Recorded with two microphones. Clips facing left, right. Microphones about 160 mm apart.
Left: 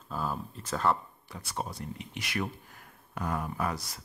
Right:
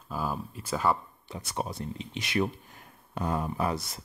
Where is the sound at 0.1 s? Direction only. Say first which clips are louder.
Right 2 dB; 5° right (ahead or behind).